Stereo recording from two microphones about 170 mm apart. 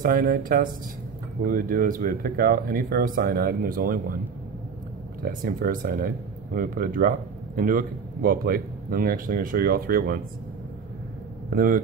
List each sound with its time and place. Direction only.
0.0 s speech: 55° right (ahead or behind)
5.2 s speech: 55° right (ahead or behind)
11.5 s speech: 60° right (ahead or behind)